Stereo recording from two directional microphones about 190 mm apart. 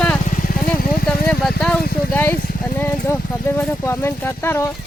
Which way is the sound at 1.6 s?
5° left (ahead or behind).